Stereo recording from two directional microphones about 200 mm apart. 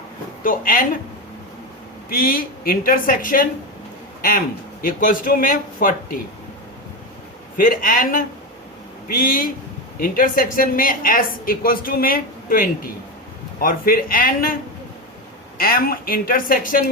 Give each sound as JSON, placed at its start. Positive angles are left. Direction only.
{"t": 0.4, "sound": "a woman's voice", "side_deg": 45}
{"t": 2.0, "sound": "a woman's voice", "side_deg": 45}
{"t": 7.5, "sound": "a woman's voice", "side_deg": 45}
{"t": 15.5, "sound": "a woman's voice", "side_deg": 45}